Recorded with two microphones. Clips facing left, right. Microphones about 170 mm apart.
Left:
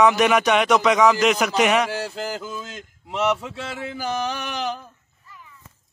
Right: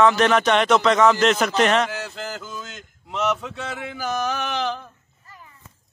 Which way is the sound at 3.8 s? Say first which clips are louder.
Even; 30° left (ahead or behind).